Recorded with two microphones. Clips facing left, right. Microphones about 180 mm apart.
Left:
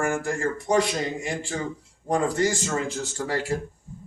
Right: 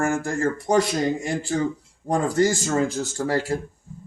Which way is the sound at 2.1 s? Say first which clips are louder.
Right 3 dB; 40° right (ahead or behind).